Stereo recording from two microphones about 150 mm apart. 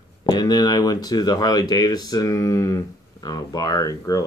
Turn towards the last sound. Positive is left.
turn(degrees=25)  # may be behind; listen again after turning